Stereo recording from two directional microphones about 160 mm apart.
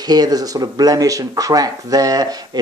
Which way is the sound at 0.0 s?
25° right (ahead or behind).